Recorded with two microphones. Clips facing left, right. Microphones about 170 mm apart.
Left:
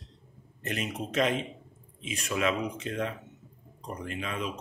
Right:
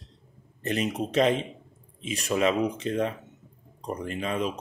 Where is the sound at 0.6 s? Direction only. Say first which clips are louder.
Right 6 dB; 35° right (ahead or behind).